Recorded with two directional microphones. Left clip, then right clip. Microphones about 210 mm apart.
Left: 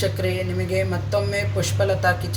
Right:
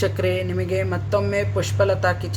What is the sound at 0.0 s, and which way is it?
Speech, 30° right (ahead or behind).